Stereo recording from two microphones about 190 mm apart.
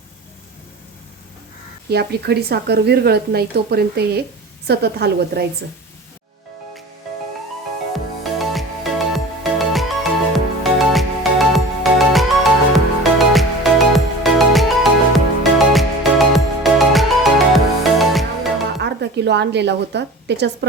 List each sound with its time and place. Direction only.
1.9 s speech: 60° right (ahead or behind)
7.9 s music: centre (ahead or behind)
18.8 s a woman's voice: 65° right (ahead or behind)